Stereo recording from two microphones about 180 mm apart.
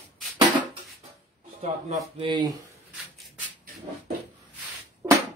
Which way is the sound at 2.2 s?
25° right (ahead or behind).